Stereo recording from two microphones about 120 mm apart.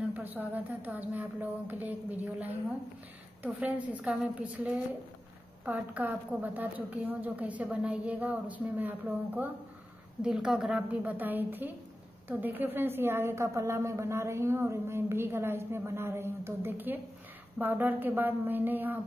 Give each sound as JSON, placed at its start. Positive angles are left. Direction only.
{"t": 0.1, "sound": "a woman's voice", "side_deg": -15}